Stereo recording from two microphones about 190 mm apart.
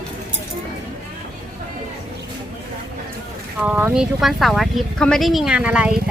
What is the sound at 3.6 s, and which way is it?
Speech, 10° right (ahead or behind).